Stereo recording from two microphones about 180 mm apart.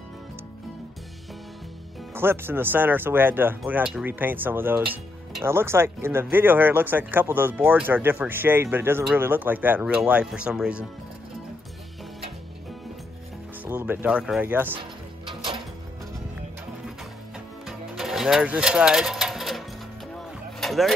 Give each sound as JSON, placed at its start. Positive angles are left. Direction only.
{"t": 2.1, "sound": "speech", "side_deg": -10}
{"t": 13.7, "sound": "speech", "side_deg": -10}
{"t": 14.8, "sound": "music", "side_deg": -30}
{"t": 17.6, "sound": "music", "side_deg": 0}